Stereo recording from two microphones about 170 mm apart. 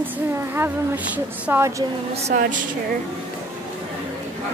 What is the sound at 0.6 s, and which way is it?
A woman's voice, 10° right (ahead or behind).